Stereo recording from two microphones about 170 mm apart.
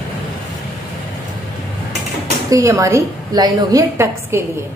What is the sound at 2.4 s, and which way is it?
A woman's voice, 20° right (ahead or behind).